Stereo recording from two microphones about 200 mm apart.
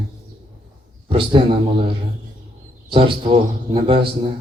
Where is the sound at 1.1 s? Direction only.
25° right (ahead or behind).